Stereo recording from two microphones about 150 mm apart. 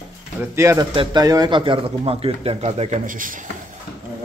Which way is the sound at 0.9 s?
30° right (ahead or behind).